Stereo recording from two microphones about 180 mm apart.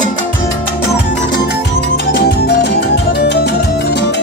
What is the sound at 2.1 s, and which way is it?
Music, 65° left (ahead or behind).